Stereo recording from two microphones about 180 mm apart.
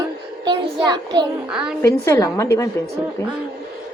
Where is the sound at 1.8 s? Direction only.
20° left (ahead or behind).